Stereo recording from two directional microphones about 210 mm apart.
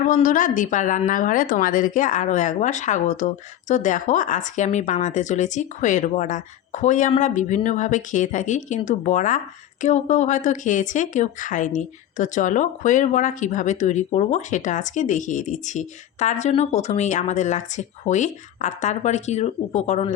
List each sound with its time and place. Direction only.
0.1 s speech: 40° left (ahead or behind)